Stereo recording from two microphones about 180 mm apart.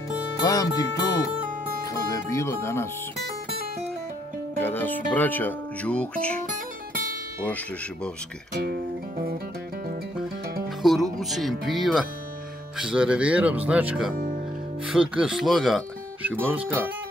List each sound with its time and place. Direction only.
0.4 s speech: 20° left (ahead or behind)
4.6 s speech: 10° left (ahead or behind)
8.6 s music: 55° right (ahead or behind)
10.8 s speech: centre (ahead or behind)
14.1 s music: 50° right (ahead or behind)
14.9 s speech: 5° right (ahead or behind)